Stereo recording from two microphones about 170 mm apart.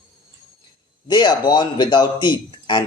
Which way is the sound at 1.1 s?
25° left (ahead or behind).